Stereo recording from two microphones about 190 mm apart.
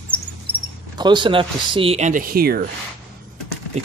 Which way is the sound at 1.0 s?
25° right (ahead or behind).